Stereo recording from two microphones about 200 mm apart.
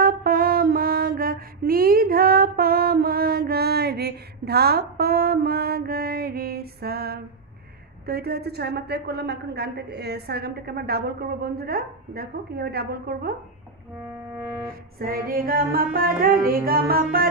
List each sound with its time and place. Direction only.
0.0 s female singing: 50° right (ahead or behind)
8.1 s a woman's voice: 50° right (ahead or behind)
14.0 s music: 10° right (ahead or behind)
15.0 s a woman's voice: 45° right (ahead or behind)